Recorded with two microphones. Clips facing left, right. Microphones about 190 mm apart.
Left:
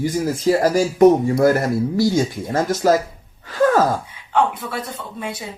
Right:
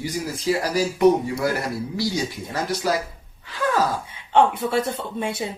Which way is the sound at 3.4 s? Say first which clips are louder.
Left 7 dB; 45° left (ahead or behind).